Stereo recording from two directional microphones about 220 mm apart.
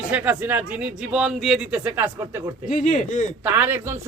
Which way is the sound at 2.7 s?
35° left (ahead or behind).